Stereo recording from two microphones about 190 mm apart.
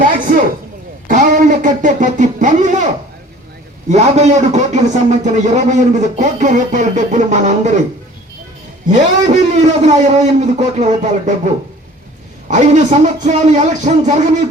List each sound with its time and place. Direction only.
1.0 s a sound: 45° right (ahead or behind)
3.8 s a man's voice: 35° right (ahead or behind)
8.9 s a man's voice: 40° right (ahead or behind)
12.5 s a man's voice: 40° right (ahead or behind)